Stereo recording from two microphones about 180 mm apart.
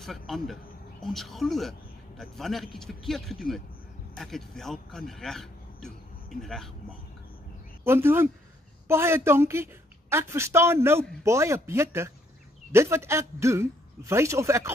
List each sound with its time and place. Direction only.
0.0 s a man's voice: centre (ahead or behind)
7.8 s a woman's voice: 15° right (ahead or behind)